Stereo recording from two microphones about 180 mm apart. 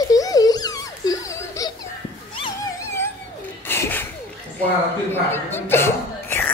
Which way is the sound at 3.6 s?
10° left (ahead or behind).